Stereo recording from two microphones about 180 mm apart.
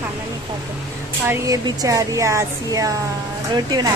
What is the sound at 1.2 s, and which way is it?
Speech, 20° right (ahead or behind).